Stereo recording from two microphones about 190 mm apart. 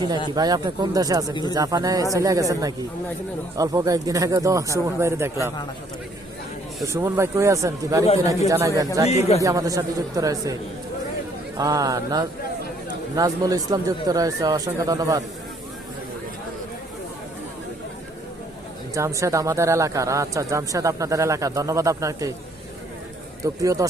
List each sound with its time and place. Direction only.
0.3 s speech: 20° right (ahead or behind)
1.3 s speech: 20° left (ahead or behind)
1.5 s speech: 20° right (ahead or behind)
6.8 s speech: 15° right (ahead or behind)
9.0 s speech: 35° left (ahead or behind)
9.4 s speech: 20° right (ahead or behind)
11.5 s speech: 20° right (ahead or behind)
18.9 s speech: 15° right (ahead or behind)
23.4 s speech: 15° right (ahead or behind)